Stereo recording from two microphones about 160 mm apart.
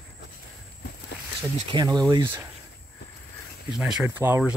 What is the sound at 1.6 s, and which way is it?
Speech, 25° right (ahead or behind).